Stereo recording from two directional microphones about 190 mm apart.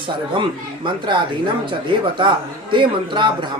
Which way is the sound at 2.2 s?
25° right (ahead or behind).